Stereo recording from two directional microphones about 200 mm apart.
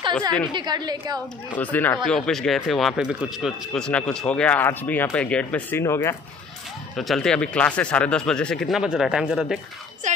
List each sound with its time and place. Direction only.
0.5 s a woman's voice: 20° right (ahead or behind)
1.5 s speech: 10° left (ahead or behind)
7.0 s speech: centre (ahead or behind)
10.1 s music: 40° right (ahead or behind)